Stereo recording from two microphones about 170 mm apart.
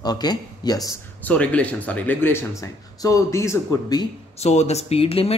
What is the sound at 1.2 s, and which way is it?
Speech, 10° left (ahead or behind).